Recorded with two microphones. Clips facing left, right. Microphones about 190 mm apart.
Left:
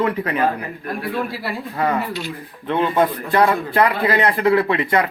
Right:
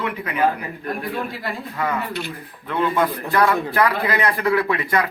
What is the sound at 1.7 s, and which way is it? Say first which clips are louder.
Speech: left 4 dB; 35° left (ahead or behind).